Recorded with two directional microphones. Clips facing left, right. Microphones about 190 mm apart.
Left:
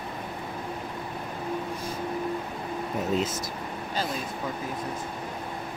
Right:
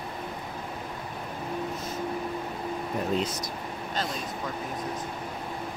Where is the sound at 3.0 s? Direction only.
5° left (ahead or behind).